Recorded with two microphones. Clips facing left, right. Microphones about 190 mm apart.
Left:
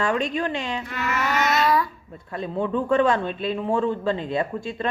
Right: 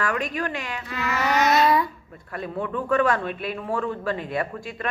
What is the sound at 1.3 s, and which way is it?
Babbling, 20° right (ahead or behind).